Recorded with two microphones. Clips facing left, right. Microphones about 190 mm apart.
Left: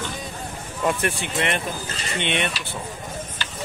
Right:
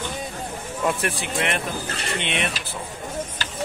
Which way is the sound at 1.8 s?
65° right (ahead or behind).